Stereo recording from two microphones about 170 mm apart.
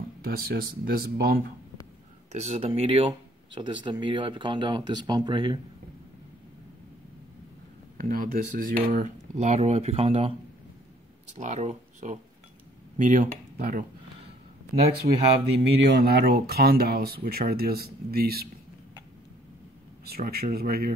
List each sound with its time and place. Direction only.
0.2 s speech: 65° right (ahead or behind)
2.3 s speech: 40° right (ahead or behind)
8.0 s speech: 60° right (ahead or behind); by 10.3 s 35° right (ahead or behind)
11.3 s speech: 45° right (ahead or behind)
15.5 s speech: 70° right (ahead or behind)
20.1 s speech: 60° right (ahead or behind)